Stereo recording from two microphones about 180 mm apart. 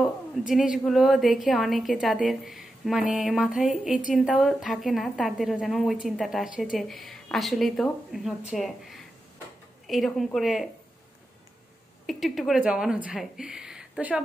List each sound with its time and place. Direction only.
0.0 s a woman's voice: centre (ahead or behind)
12.1 s a woman's voice: centre (ahead or behind)